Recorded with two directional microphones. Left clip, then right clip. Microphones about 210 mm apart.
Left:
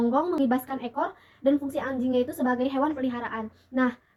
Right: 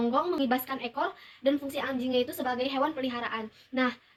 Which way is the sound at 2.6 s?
15° right (ahead or behind).